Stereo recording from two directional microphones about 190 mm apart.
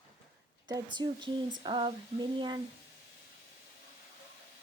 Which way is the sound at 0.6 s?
20° right (ahead or behind).